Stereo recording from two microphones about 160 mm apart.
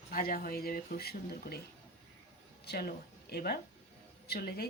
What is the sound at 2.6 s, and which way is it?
A woman's voice, 80° left.